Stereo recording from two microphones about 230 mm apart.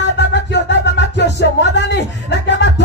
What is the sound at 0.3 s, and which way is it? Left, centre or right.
Music, left.